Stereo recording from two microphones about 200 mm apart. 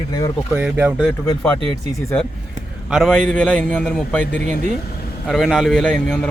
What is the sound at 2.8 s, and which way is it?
A man's voice, centre (ahead or behind).